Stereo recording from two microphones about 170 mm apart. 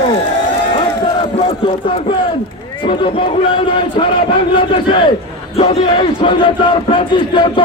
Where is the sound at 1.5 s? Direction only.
30° left (ahead or behind).